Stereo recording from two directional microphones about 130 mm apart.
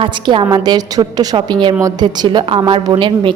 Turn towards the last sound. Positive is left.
turn(degrees=-35)  # may be behind; listen again after turning